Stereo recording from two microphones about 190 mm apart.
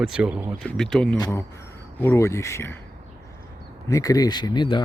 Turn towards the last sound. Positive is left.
turn(degrees=25)  # may be behind; listen again after turning